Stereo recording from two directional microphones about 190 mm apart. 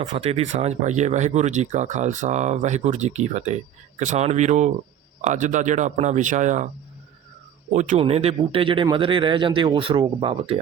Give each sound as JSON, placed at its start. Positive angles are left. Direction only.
{"t": 0.1, "sound": "speech", "side_deg": -30}
{"t": 7.7, "sound": "a man's voice", "side_deg": -40}